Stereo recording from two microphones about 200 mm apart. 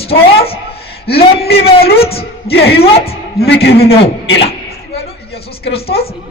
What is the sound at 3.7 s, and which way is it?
Speech, 30° left (ahead or behind).